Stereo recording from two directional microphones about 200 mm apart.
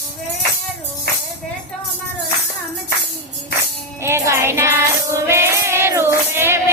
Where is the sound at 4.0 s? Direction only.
15° right (ahead or behind).